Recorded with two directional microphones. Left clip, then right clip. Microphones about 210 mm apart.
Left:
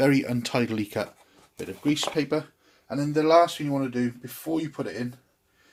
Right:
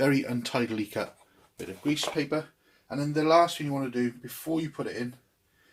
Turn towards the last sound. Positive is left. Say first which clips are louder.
# left 2 dB
turn(degrees=50)  # may be behind; listen again after turning